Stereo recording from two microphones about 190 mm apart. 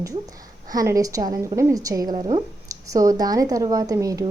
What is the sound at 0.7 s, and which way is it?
A woman's voice, 20° right (ahead or behind).